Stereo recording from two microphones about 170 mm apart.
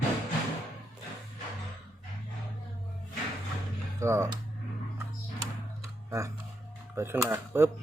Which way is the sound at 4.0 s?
15° right (ahead or behind).